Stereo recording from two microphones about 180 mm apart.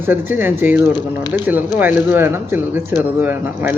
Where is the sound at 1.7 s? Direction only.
10° right (ahead or behind).